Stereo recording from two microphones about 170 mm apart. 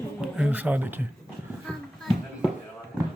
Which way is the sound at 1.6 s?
Centre (ahead or behind).